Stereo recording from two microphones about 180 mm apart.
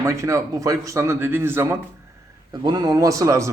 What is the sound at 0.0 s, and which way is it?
A man's voice, 15° right (ahead or behind).